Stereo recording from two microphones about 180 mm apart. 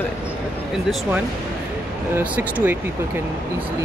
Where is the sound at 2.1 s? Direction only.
10° right (ahead or behind).